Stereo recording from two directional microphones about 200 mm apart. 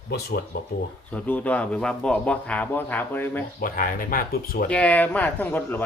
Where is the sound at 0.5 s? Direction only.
50° left (ahead or behind).